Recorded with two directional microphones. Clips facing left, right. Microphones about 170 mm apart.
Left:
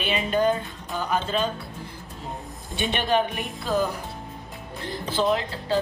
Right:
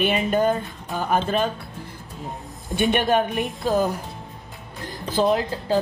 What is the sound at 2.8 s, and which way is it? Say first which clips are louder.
Speech: right 4 dB; 50° right (ahead or behind).